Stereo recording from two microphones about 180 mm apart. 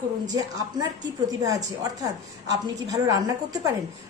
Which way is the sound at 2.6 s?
20° right (ahead or behind).